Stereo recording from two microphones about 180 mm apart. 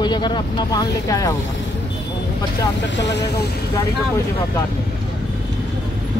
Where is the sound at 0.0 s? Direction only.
25° left (ahead or behind).